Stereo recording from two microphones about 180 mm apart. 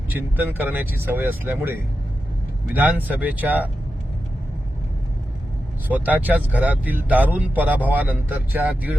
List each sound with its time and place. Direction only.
0.1 s speech: 10° right (ahead or behind)
5.9 s speech: 10° right (ahead or behind)